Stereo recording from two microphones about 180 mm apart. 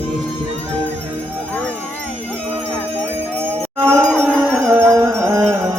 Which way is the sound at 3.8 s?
10° right (ahead or behind).